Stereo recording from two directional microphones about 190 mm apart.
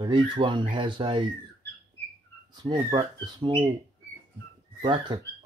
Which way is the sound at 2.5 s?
20° right (ahead or behind).